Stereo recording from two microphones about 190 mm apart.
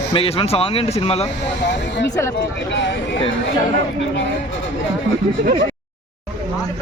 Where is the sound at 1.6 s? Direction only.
65° left (ahead or behind).